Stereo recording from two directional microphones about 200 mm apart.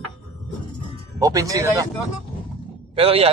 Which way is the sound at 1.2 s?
15° right (ahead or behind).